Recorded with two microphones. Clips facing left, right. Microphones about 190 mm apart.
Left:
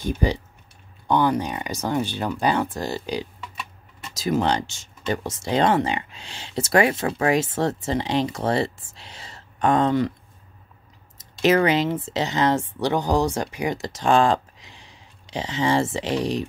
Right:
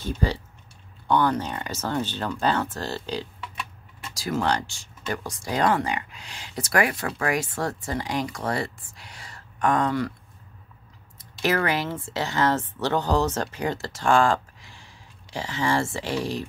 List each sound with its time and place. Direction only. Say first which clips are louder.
0.0 s speech: left 3 dB; 15° left (ahead or behind)
11.4 s speech: left 6 dB; 20° left (ahead or behind)